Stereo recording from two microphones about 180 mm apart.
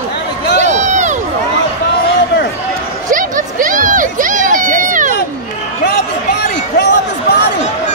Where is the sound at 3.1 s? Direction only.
50° right (ahead or behind).